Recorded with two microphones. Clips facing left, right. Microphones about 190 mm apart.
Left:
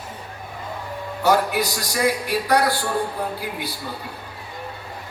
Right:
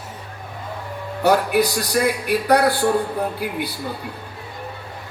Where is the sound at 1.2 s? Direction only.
60° right (ahead or behind).